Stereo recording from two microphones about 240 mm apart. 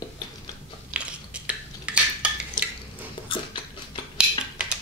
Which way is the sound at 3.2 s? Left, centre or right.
Centre.